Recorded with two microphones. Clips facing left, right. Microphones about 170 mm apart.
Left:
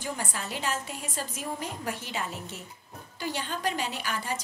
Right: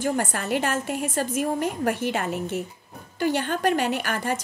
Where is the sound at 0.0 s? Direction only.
55° right (ahead or behind).